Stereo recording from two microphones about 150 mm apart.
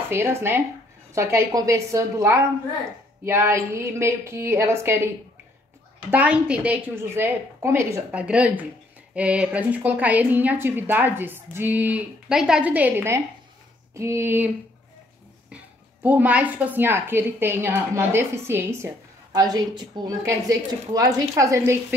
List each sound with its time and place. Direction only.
0.1 s a woman's voice: 15° right (ahead or behind)
6.0 s speech: 10° right (ahead or behind)
15.5 s a woman's voice: 10° right (ahead or behind)